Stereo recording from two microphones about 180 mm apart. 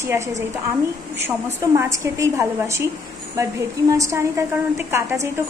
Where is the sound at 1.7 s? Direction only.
15° right (ahead or behind).